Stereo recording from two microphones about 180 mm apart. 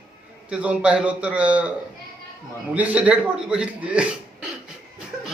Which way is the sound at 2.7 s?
10° right (ahead or behind).